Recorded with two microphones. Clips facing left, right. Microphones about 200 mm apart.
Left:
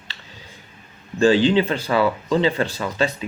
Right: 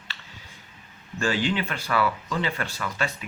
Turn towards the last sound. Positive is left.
turn(degrees=25)  # may be behind; listen again after turning